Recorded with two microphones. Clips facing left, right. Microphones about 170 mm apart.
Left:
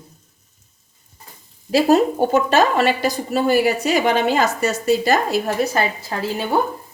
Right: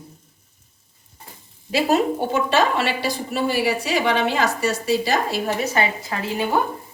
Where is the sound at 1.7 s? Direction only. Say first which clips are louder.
Left 4 dB; 40° left (ahead or behind).